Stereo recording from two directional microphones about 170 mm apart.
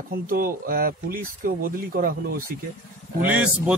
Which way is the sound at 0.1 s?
60° right (ahead or behind).